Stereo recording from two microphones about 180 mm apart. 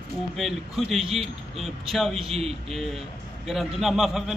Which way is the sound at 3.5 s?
Centre (ahead or behind).